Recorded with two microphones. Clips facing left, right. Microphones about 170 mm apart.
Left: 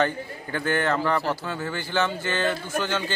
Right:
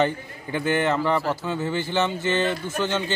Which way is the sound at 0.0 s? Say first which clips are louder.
Right 1 dB; 15° right (ahead or behind).